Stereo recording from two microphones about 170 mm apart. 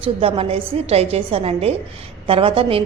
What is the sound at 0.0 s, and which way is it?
A woman's voice, 35° right (ahead or behind).